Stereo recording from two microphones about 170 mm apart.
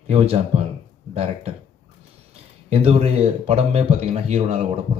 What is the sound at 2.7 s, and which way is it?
Speech, 35° right (ahead or behind).